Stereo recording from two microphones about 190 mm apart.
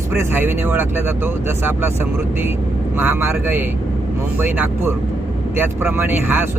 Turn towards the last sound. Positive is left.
turn(degrees=-10)  # may be behind; listen again after turning